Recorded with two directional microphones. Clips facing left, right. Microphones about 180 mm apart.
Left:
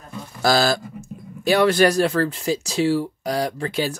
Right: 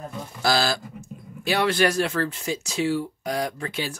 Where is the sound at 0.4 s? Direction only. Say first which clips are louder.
Left 5 dB; 45° left (ahead or behind).